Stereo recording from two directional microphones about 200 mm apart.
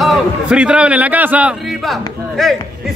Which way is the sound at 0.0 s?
5° right (ahead or behind).